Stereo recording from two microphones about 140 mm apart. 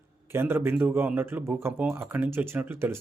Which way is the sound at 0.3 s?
15° right (ahead or behind).